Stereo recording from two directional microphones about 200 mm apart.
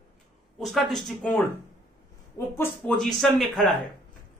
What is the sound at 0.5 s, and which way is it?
Speech, centre (ahead or behind).